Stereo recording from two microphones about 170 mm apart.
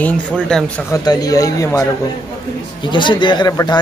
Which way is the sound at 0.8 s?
20° left (ahead or behind).